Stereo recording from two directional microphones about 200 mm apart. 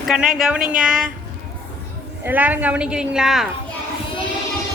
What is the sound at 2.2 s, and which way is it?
A woman's voice, 10° right (ahead or behind).